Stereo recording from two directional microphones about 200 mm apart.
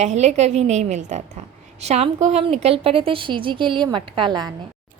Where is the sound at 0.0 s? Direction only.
35° right (ahead or behind).